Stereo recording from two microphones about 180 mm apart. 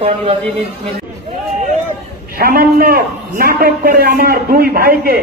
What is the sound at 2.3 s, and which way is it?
A man's voice, 55° right (ahead or behind).